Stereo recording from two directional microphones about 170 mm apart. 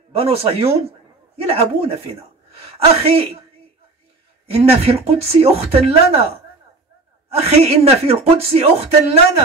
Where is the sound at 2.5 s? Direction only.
35° right (ahead or behind).